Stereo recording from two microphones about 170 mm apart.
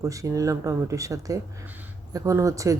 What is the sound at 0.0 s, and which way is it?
Speech, 20° right (ahead or behind).